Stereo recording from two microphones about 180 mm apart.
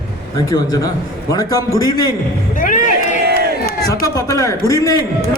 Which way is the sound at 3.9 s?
20° left (ahead or behind).